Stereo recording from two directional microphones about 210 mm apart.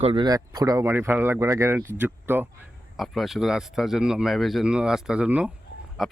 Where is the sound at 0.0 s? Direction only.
25° right (ahead or behind).